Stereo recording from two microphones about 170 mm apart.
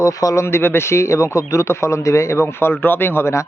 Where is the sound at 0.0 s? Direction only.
20° left (ahead or behind).